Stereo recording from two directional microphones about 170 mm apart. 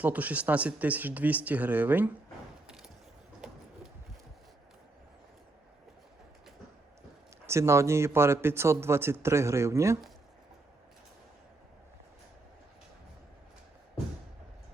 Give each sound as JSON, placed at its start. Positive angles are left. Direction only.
{"t": 0.0, "sound": "a man's voice", "side_deg": -10}
{"t": 2.6, "sound": "a sound", "side_deg": -5}
{"t": 7.4, "sound": "a man's voice", "side_deg": -15}